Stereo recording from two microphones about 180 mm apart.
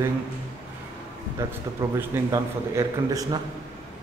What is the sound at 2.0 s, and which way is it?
A man's voice, 15° right (ahead or behind).